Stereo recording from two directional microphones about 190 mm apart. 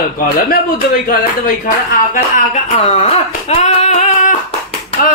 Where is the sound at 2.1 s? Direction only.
40° left (ahead or behind).